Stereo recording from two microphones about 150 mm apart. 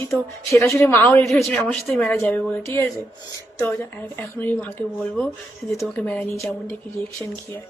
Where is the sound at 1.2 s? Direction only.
Centre (ahead or behind).